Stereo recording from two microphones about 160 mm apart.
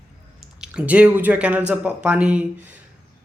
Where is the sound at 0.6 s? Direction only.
5° right (ahead or behind).